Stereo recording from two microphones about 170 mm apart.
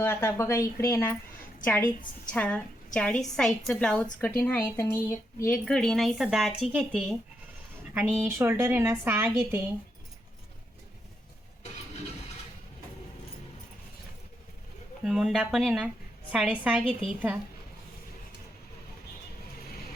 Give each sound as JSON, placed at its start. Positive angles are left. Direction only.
{"t": 0.0, "sound": "a woman's voice", "side_deg": 15}
{"t": 15.0, "sound": "a woman's voice", "side_deg": 0}